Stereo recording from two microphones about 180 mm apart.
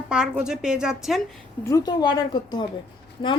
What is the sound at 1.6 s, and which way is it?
Speech, 20° left (ahead or behind).